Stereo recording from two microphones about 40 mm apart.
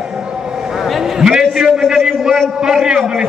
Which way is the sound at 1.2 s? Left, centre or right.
Centre.